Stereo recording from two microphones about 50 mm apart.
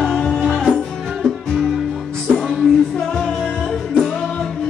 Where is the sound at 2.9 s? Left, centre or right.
Centre.